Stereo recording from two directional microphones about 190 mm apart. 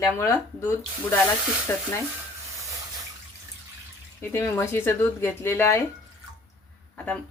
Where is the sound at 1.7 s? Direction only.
10° left (ahead or behind).